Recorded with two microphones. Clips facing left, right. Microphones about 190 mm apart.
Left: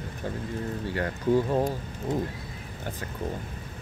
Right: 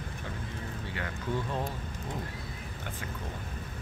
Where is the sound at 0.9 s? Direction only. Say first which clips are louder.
Left 11 dB; 40° left (ahead or behind).